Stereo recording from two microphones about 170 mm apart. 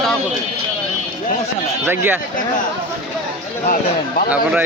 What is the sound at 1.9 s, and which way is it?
Speech, 10° right (ahead or behind).